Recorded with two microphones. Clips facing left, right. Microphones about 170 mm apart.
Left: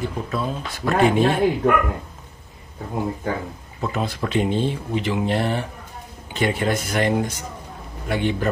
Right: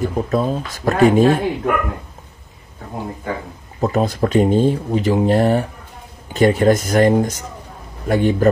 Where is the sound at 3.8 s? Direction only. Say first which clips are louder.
Right 8 dB; 40° right (ahead or behind).